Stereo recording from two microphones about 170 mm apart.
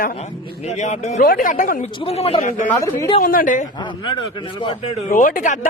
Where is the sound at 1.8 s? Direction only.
30° left (ahead or behind).